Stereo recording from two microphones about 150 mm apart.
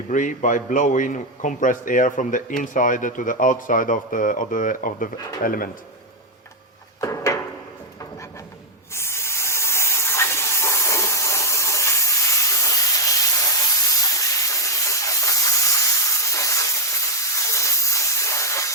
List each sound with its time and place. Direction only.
0.1 s a man's voice: 60° left (ahead or behind)
7.0 s a sound: 20° left (ahead or behind)
8.9 s spray: 20° left (ahead or behind)
17.3 s steam: 20° left (ahead or behind)